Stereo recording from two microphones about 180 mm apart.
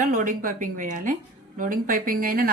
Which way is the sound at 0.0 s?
45° right (ahead or behind).